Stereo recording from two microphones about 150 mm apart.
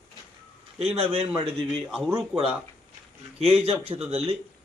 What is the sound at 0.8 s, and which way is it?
Speech, 40° right (ahead or behind).